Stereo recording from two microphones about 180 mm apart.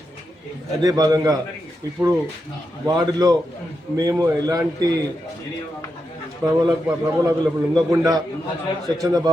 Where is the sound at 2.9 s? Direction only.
20° right (ahead or behind).